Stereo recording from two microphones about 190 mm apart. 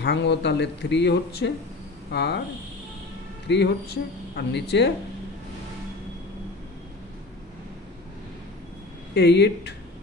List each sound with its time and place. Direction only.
0.0 s speech: 65° left (ahead or behind)
3.4 s speech: 60° left (ahead or behind)
9.1 s speech: 65° left (ahead or behind)